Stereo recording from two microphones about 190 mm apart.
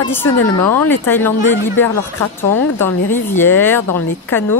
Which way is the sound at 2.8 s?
10° left (ahead or behind).